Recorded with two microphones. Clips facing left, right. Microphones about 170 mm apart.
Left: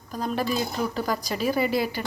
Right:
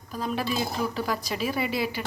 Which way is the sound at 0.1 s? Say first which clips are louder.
Left 2 dB; centre (ahead or behind).